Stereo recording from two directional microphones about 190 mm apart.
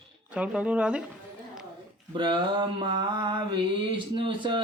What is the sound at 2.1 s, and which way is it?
Mantra, 25° right (ahead or behind).